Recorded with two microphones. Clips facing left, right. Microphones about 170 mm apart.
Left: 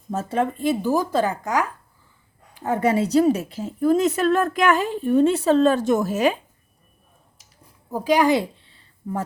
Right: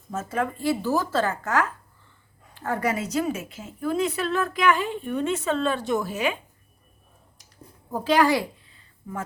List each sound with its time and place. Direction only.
0.1 s a woman's voice: 30° left (ahead or behind)
7.9 s a woman's voice: 10° left (ahead or behind); by 9.2 s 30° left (ahead or behind)